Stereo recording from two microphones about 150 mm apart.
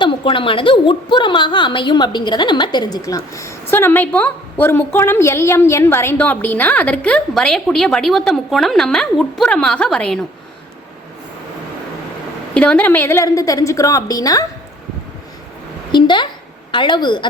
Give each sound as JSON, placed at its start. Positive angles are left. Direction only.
{"t": 0.0, "sound": "a woman's voice", "side_deg": 35}
{"t": 12.5, "sound": "a woman's voice", "side_deg": 10}
{"t": 15.9, "sound": "a woman's voice", "side_deg": 30}